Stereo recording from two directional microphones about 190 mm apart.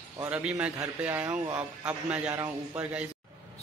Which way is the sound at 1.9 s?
5° right (ahead or behind).